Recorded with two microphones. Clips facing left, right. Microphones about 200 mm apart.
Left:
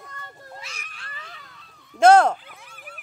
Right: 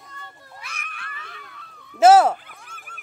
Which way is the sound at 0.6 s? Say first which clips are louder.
Right 3 dB; 55° right (ahead or behind).